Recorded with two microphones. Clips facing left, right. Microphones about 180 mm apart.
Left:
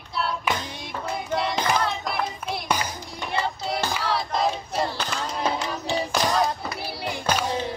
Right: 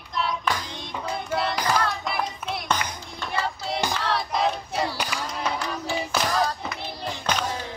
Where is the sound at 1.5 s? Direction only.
20° left (ahead or behind).